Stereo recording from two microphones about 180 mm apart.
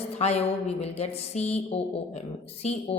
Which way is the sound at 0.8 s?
35° left (ahead or behind).